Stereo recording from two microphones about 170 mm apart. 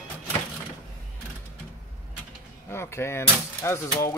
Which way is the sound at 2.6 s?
15° left (ahead or behind).